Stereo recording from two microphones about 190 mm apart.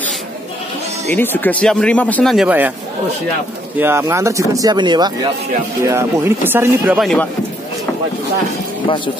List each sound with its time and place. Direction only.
1.0 s speech: 10° left (ahead or behind); by 2.7 s 5° right (ahead or behind)
3.7 s speech: 10° right (ahead or behind)
7.0 s speech: centre (ahead or behind)
8.8 s speech: 25° left (ahead or behind)